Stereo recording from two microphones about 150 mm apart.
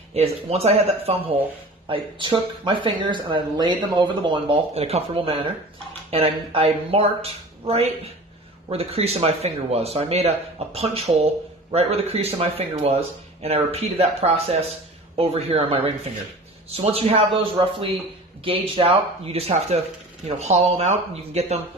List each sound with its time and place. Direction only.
0.1 s speech: 45° right (ahead or behind)